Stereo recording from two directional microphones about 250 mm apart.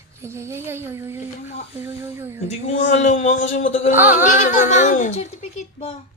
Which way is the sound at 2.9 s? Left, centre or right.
Left.